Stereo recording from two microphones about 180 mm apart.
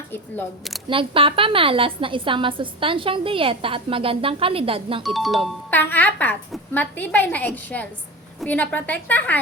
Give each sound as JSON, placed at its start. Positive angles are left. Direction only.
{"t": 0.9, "sound": "a woman's voice", "side_deg": -30}
{"t": 5.0, "sound": "speech", "side_deg": 0}
{"t": 5.7, "sound": "a woman's voice", "side_deg": 10}